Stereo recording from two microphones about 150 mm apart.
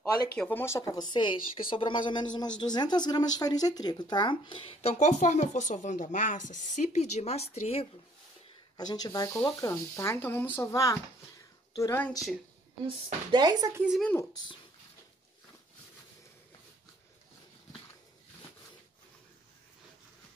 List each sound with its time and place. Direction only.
0.4 s speech: 15° left (ahead or behind)
1.1 s a woman's voice: 30° left (ahead or behind)
4.9 s speech: 50° left (ahead or behind)
8.7 s speech: 25° left (ahead or behind)
12.8 s speech: 30° right (ahead or behind)
13.7 s speech: 5° right (ahead or behind)
14.3 s speech: 30° left (ahead or behind)